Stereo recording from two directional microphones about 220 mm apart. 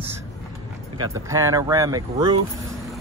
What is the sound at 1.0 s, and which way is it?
Speech, 15° right (ahead or behind).